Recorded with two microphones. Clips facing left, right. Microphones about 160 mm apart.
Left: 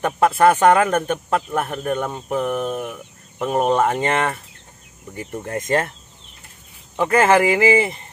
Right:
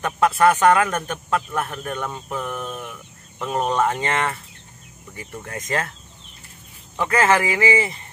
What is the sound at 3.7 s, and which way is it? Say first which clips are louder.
Speech: left 2 dB; 30° left (ahead or behind).